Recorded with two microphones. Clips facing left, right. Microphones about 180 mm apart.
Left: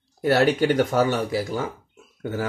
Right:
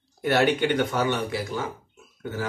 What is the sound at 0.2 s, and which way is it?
Speech, 35° left (ahead or behind).